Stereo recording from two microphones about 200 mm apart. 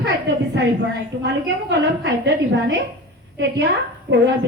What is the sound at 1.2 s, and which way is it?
A woman's voice, 60° right (ahead or behind).